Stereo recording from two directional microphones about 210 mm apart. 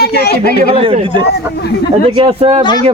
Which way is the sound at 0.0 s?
50° left (ahead or behind).